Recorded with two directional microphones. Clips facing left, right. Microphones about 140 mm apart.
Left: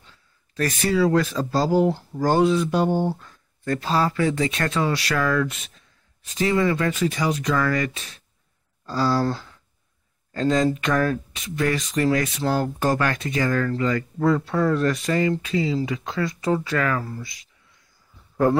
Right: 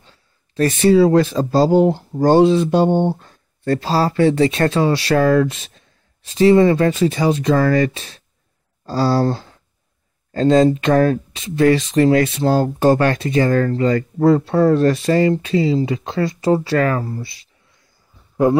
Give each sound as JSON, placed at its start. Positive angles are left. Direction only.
{"t": 0.6, "sound": "speech", "side_deg": -25}